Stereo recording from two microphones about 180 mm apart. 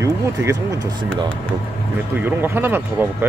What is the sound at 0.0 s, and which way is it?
Speech, 15° right (ahead or behind).